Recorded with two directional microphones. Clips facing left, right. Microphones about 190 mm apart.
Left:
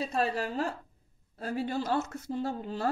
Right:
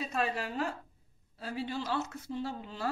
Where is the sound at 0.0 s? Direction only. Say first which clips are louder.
Left 3 dB; 35° left (ahead or behind).